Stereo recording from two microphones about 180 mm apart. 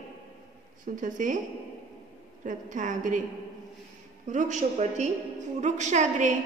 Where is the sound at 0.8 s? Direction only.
45° right (ahead or behind).